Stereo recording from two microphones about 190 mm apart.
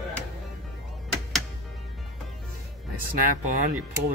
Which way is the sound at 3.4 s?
40° right (ahead or behind).